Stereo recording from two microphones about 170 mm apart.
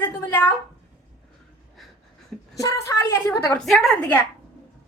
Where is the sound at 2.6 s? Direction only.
20° left (ahead or behind).